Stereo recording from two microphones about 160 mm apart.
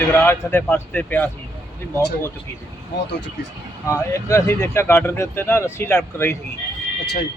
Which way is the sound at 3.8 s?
20° left (ahead or behind).